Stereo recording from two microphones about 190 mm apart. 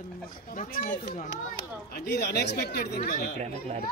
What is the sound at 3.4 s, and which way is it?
Chatter, 35° right (ahead or behind).